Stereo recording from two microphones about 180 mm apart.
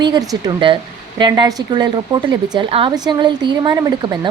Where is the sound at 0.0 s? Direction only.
25° right (ahead or behind).